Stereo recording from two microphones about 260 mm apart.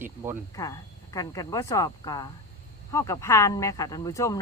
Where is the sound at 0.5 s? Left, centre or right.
Centre.